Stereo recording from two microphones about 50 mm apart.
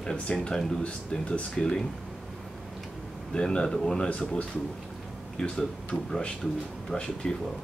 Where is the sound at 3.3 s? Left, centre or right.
Centre.